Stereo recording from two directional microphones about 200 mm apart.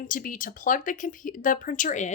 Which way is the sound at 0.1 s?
40° left (ahead or behind).